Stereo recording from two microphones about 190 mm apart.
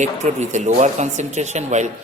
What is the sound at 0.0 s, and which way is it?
Speech, 40° right (ahead or behind).